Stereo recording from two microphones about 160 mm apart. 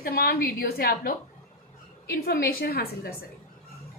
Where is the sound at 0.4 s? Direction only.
70° left (ahead or behind).